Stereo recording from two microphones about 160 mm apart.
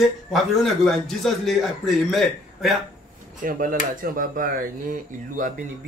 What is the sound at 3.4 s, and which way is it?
Speech, 60° right (ahead or behind).